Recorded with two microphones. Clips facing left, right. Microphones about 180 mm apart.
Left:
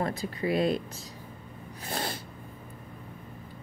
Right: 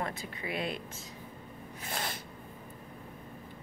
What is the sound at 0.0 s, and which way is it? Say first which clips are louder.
Speech: left 7 dB; 35° left (ahead or behind).